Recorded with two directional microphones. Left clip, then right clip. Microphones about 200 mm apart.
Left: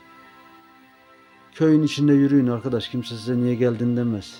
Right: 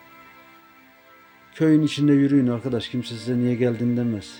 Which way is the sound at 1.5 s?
5° left (ahead or behind).